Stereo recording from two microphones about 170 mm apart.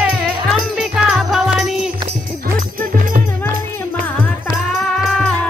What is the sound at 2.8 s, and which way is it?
Music, 50° right (ahead or behind).